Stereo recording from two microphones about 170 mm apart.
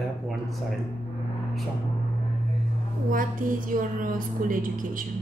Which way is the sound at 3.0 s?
50° right (ahead or behind).